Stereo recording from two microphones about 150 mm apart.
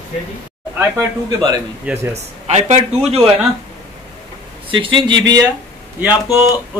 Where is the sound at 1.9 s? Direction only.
10° right (ahead or behind).